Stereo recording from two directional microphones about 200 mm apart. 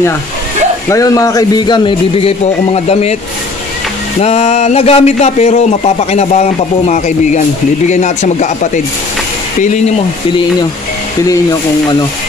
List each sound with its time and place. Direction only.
0.8 s speech: 15° left (ahead or behind); by 3.2 s 30° left (ahead or behind)
4.2 s speech: 35° left (ahead or behind)